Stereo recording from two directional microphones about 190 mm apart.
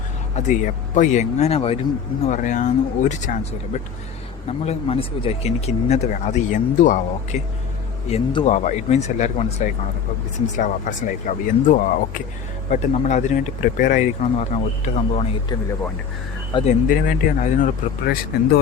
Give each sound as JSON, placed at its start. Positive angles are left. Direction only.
{"t": 0.3, "sound": "speech", "side_deg": 40}
{"t": 2.2, "sound": "speech", "side_deg": 40}
{"t": 8.1, "sound": "speech", "side_deg": 25}
{"t": 8.4, "sound": "speech", "side_deg": 40}
{"t": 16.6, "sound": "speech", "side_deg": 45}